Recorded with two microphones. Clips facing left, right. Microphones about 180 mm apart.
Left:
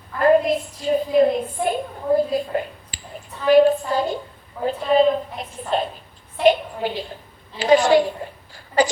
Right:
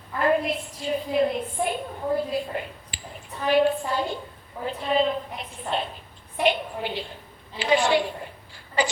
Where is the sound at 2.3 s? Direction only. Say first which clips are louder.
Left 5 dB; 40° left (ahead or behind).